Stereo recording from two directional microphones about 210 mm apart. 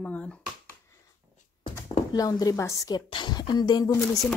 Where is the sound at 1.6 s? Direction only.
20° left (ahead or behind).